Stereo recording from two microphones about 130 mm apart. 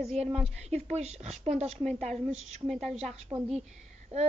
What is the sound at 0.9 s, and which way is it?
Speech, 60° right (ahead or behind).